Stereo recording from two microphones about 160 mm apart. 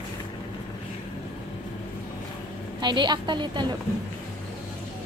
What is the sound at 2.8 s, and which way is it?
Speech, 30° right (ahead or behind).